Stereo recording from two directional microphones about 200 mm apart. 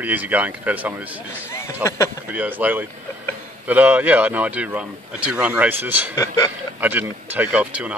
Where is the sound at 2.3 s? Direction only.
10° right (ahead or behind).